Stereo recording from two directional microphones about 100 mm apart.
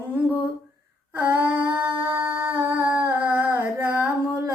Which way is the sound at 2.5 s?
20° right (ahead or behind).